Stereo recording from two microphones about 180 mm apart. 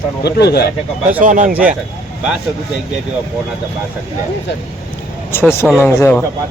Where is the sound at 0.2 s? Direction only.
65° left (ahead or behind).